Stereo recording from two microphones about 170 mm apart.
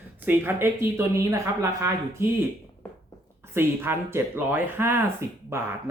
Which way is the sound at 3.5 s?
15° right (ahead or behind).